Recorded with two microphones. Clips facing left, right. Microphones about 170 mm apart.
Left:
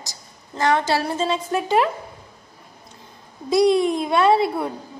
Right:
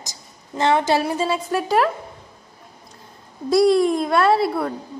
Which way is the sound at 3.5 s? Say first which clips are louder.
Right 1 dB; centre (ahead or behind).